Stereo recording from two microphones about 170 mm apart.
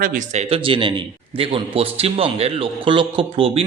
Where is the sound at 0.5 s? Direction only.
30° right (ahead or behind).